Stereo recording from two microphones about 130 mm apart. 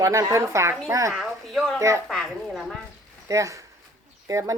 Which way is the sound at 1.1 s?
Centre (ahead or behind).